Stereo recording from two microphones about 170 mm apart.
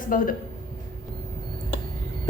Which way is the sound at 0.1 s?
55° left (ahead or behind).